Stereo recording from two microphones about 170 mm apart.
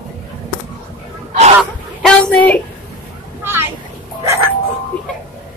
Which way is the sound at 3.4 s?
15° right (ahead or behind).